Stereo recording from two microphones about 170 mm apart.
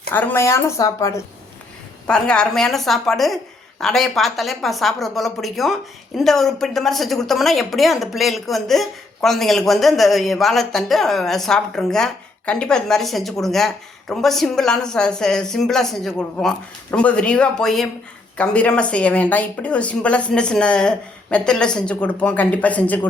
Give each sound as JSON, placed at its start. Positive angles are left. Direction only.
{"t": 0.1, "sound": "speech", "side_deg": 10}
{"t": 2.0, "sound": "a woman's voice", "side_deg": 5}